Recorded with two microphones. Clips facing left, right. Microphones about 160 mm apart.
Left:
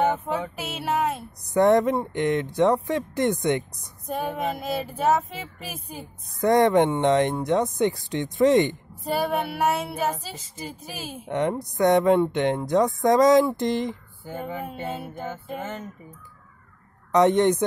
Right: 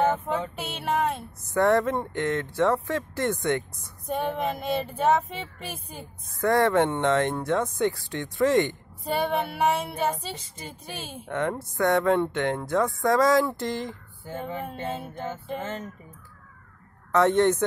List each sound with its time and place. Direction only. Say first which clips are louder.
0.0 s child singing: left 1 dB; 10° left (ahead or behind)
1.4 s speech: left 3 dB; 20° left (ahead or behind)
4.1 s child singing: even; centre (ahead or behind)
6.4 s music: left 3 dB; 20° left (ahead or behind)
9.0 s child singing: left 1 dB; centre (ahead or behind)
11.2 s music: left 3 dB; 20° left (ahead or behind)
14.4 s speech: left 1 dB; 5° left (ahead or behind)
17.1 s speech: left 2 dB; 15° left (ahead or behind)